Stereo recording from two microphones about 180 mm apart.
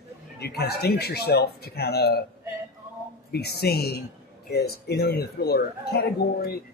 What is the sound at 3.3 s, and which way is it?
Speech, 65° left (ahead or behind).